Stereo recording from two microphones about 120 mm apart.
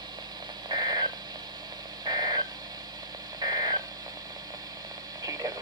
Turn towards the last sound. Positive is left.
turn(degrees=-30)  # may be behind; listen again after turning